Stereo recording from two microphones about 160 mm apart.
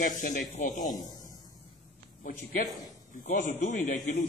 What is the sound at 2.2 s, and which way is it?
A man's voice, 60° left (ahead or behind).